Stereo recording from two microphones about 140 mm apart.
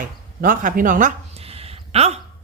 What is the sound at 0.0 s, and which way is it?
Speech, 75° right (ahead or behind).